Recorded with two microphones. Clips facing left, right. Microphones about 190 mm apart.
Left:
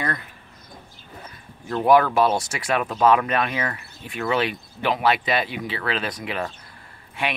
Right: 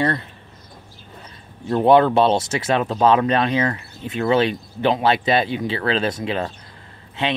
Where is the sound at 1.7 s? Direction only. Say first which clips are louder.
Right 4 dB; 25° right (ahead or behind).